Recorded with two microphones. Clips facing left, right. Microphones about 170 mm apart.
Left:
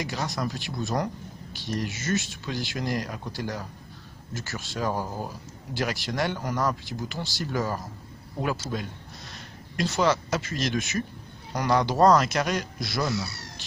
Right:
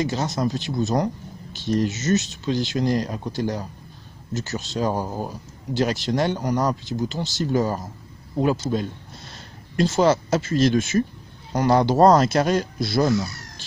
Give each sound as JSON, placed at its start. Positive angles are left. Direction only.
{"t": 0.0, "sound": "speech", "side_deg": -25}